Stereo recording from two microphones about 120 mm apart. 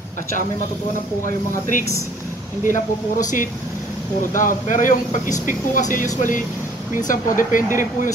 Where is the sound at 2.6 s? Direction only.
90° left.